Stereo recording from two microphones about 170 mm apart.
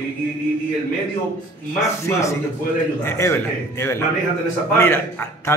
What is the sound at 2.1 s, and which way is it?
Speech, 15° left (ahead or behind).